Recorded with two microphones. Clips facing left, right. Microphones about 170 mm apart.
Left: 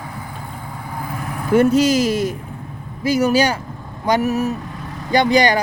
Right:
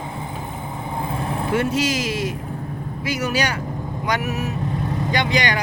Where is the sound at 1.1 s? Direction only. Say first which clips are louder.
Right 2 dB; 25° right (ahead or behind).